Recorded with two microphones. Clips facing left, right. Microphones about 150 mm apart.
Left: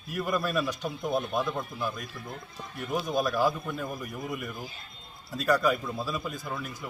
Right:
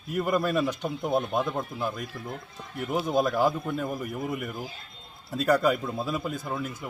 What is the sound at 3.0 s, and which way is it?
Speech, 25° right (ahead or behind).